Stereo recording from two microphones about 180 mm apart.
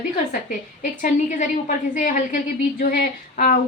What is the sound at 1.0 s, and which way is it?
A woman's voice, 45° left (ahead or behind).